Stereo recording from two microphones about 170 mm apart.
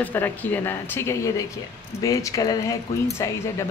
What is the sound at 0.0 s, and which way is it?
Speech, 10° left (ahead or behind).